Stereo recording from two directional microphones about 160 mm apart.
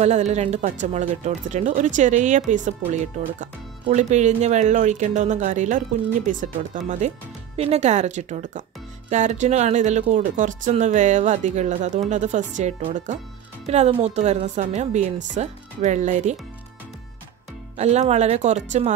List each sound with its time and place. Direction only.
0.0 s speech: 45° right (ahead or behind)
7.5 s speech: 40° right (ahead or behind)
17.7 s speech: 45° right (ahead or behind)